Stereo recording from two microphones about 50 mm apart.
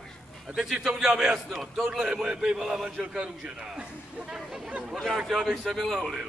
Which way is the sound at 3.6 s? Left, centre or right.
Centre.